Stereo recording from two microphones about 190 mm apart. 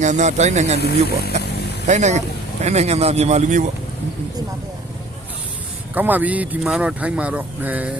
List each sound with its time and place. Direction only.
0.0 s speech: 40° right (ahead or behind)
0.8 s speech: 55° left (ahead or behind)
1.9 s speech: 40° right (ahead or behind)
5.9 s speech: 10° right (ahead or behind)